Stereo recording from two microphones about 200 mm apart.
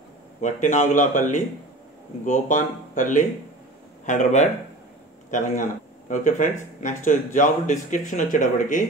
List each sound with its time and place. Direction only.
0.4 s speech: 35° left (ahead or behind)